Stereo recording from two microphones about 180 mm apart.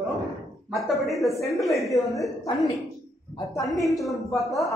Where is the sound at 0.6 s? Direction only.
Centre (ahead or behind).